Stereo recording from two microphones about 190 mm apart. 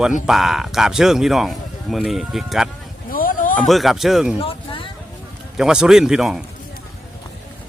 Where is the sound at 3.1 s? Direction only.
45° left (ahead or behind).